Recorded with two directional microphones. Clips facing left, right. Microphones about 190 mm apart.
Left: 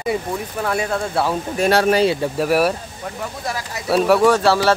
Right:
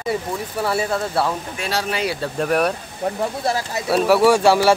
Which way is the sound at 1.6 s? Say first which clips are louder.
Left 13 dB; 50° left (ahead or behind).